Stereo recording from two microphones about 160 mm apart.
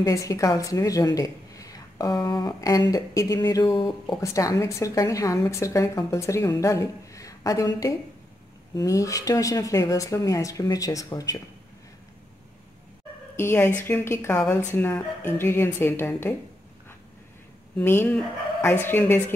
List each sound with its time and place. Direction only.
0.0 s a woman's voice: 20° left (ahead or behind)
13.4 s speech: 15° left (ahead or behind)
17.7 s speech: 10° left (ahead or behind)